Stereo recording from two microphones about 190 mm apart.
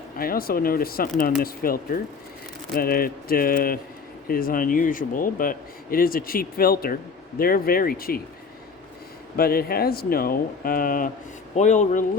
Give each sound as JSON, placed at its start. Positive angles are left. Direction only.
{"t": 0.2, "sound": "speech", "side_deg": 50}
{"t": 9.3, "sound": "speech", "side_deg": 55}